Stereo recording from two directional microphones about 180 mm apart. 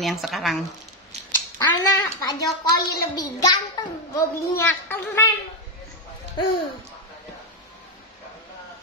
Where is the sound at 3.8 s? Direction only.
25° left (ahead or behind).